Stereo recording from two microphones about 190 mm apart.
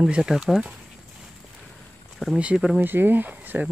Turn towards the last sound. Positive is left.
turn(degrees=-10)  # may be behind; listen again after turning